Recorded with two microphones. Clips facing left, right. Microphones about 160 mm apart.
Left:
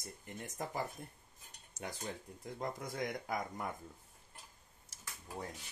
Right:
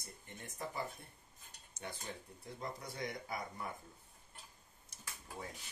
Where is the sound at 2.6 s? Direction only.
45° left (ahead or behind).